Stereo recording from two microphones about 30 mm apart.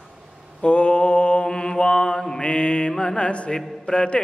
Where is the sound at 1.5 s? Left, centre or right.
Left.